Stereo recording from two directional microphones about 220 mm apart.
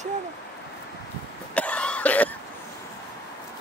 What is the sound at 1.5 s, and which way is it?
Cough, 5° left (ahead or behind).